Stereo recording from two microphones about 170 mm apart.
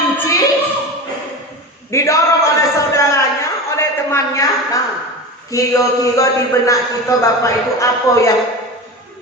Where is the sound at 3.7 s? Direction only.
15° left (ahead or behind).